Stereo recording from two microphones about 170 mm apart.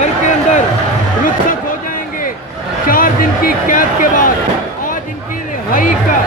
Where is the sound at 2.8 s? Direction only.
55° left (ahead or behind).